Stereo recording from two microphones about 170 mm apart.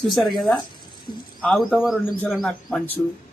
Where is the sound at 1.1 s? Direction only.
25° left (ahead or behind).